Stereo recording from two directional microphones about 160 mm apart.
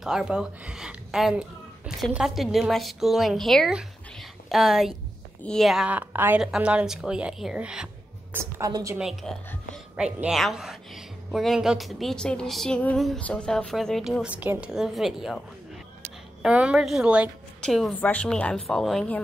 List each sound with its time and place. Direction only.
0.0 s a woman's voice: 5° right (ahead or behind); by 8.9 s 20° right (ahead or behind)
8.9 s a woman's voice: 5° right (ahead or behind)
16.4 s a woman's voice: 5° right (ahead or behind)
17.6 s a woman's voice: 5° left (ahead or behind)